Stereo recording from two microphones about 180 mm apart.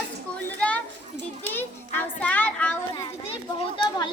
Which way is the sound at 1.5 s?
10° left (ahead or behind).